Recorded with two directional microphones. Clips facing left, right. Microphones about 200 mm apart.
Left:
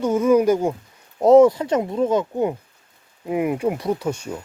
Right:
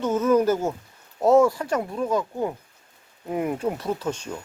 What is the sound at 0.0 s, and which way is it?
Speech, 10° left (ahead or behind).